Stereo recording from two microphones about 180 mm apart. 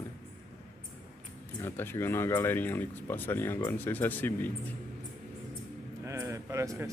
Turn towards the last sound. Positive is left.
turn(degrees=-15)  # may be behind; listen again after turning